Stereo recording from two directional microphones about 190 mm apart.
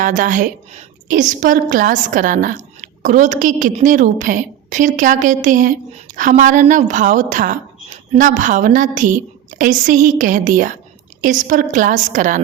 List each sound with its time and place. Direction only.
0.0 s a woman's voice: 40° right (ahead or behind)